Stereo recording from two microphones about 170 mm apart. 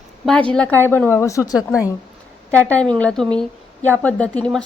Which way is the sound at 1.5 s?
5° right (ahead or behind).